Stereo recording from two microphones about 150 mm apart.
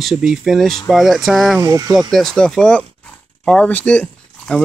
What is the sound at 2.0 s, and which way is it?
Speech, centre (ahead or behind).